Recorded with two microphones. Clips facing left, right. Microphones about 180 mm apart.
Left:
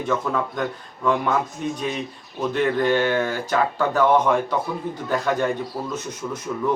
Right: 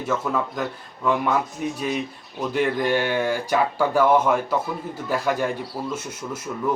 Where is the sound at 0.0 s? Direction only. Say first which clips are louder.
Left 1 dB; 5° right (ahead or behind).